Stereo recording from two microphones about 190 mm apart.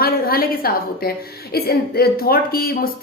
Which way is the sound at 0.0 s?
50° left (ahead or behind).